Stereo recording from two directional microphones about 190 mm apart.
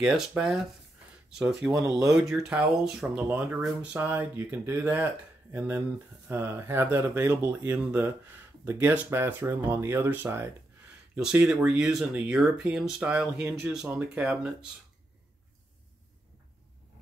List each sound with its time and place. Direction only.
0.0 s speech: 5° right (ahead or behind)